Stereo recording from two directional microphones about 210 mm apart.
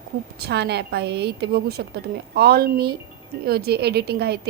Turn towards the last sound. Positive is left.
turn(degrees=-50)  # may be behind; listen again after turning